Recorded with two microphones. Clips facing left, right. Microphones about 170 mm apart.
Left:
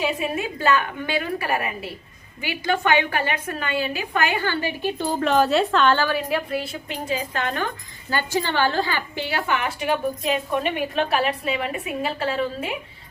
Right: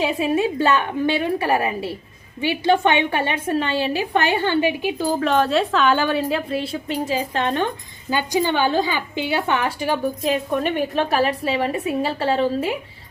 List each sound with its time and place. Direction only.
0.2 s a woman's voice: 30° right (ahead or behind)
4.6 s a woman's voice: 10° right (ahead or behind)
6.0 s a woman's voice: 25° right (ahead or behind)
8.1 s a woman's voice: 15° right (ahead or behind); by 12.5 s 30° right (ahead or behind)